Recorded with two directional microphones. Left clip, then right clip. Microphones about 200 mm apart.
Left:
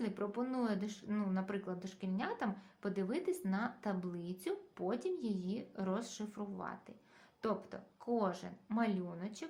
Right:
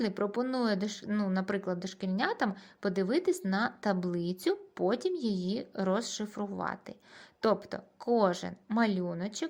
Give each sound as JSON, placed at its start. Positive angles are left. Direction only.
{"t": 0.0, "sound": "speech", "side_deg": -40}